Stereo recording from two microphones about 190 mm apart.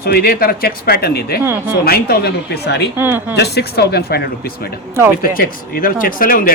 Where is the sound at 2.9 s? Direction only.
10° right (ahead or behind).